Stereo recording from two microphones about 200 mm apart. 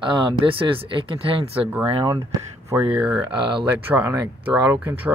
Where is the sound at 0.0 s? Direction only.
25° right (ahead or behind).